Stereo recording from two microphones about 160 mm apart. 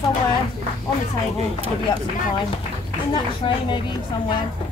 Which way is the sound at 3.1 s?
30° left (ahead or behind).